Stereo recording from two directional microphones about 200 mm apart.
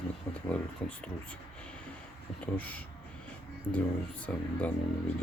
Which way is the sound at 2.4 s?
5° left (ahead or behind).